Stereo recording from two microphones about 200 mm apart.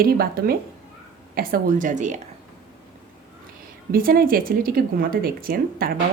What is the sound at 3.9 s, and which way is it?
Speech, 45° right (ahead or behind).